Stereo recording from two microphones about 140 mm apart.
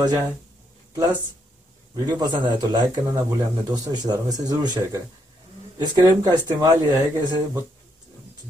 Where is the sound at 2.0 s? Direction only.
30° right (ahead or behind).